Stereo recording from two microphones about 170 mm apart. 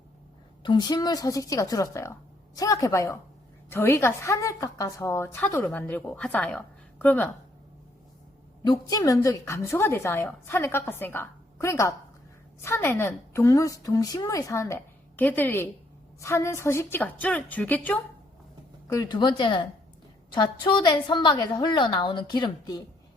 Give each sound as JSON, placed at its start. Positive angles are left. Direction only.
{"t": 0.6, "sound": "a woman's voice", "side_deg": 25}
{"t": 8.6, "sound": "a woman's voice", "side_deg": 20}
{"t": 18.9, "sound": "a woman's voice", "side_deg": 20}